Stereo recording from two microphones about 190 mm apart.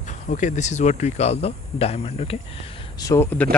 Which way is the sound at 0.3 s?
40° left (ahead or behind).